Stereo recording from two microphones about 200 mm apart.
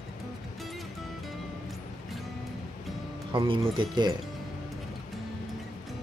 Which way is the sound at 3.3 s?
25° right (ahead or behind).